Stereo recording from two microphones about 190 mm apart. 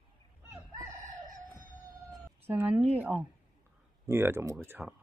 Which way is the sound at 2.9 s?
10° right (ahead or behind).